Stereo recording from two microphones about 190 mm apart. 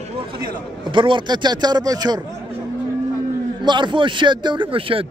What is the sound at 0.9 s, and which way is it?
Speech, 25° right (ahead or behind).